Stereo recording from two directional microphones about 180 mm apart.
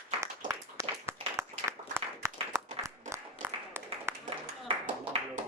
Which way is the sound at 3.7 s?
15° right (ahead or behind).